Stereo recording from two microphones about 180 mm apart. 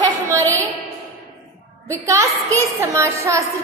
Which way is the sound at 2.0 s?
15° right (ahead or behind).